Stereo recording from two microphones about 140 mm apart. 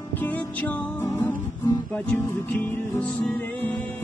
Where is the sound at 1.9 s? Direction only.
10° left (ahead or behind).